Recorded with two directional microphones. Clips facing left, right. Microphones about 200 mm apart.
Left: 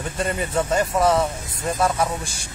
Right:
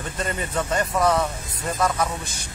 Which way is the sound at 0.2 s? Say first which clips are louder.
Left 4 dB; 10° left (ahead or behind).